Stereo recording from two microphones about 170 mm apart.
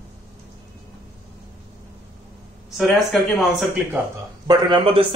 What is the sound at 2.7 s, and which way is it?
Speech, centre (ahead or behind).